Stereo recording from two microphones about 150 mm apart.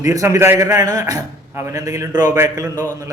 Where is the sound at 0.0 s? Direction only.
20° right (ahead or behind).